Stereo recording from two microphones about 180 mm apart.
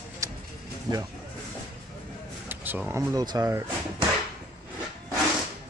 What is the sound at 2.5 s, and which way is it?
Speech, 10° right (ahead or behind).